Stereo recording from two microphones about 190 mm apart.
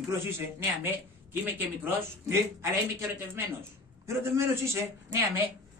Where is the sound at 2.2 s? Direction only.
15° right (ahead or behind).